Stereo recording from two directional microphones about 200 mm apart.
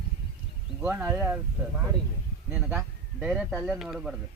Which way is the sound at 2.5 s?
10° right (ahead or behind).